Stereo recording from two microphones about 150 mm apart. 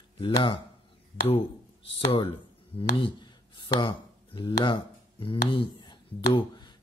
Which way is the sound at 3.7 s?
35° left (ahead or behind).